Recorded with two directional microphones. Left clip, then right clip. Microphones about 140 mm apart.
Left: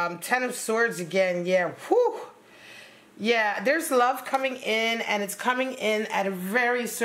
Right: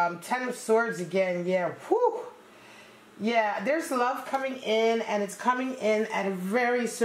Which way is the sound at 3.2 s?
40° left (ahead or behind).